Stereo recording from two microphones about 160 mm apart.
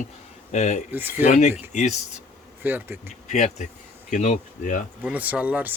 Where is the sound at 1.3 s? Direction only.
45° left (ahead or behind).